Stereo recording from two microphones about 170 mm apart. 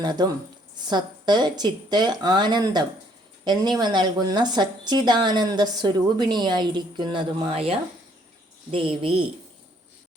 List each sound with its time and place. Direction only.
0.0 s a woman's voice: 25° right (ahead or behind)